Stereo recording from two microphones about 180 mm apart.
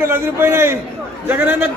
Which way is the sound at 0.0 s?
15° right (ahead or behind).